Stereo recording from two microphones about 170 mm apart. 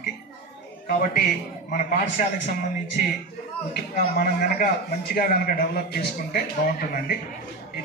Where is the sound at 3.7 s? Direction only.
60° left (ahead or behind).